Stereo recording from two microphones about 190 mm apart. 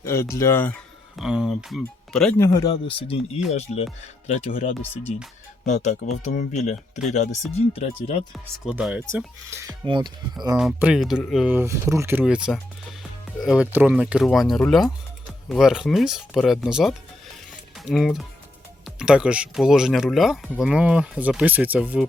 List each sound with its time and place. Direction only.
0.0 s speech: 15° left (ahead or behind)
1.2 s speech: 5° right (ahead or behind)
2.4 s speech: 15° left (ahead or behind); by 8.2 s 35° left (ahead or behind)
8.3 s speech: 5° right (ahead or behind)
9.8 s speech: 25° right (ahead or behind)
10.6 s speech: 5° right (ahead or behind)